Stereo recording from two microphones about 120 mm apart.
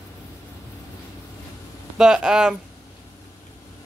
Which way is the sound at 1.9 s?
5° right (ahead or behind).